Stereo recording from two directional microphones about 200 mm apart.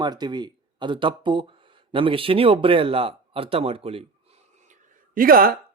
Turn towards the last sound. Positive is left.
turn(degrees=-45)  # may be behind; listen again after turning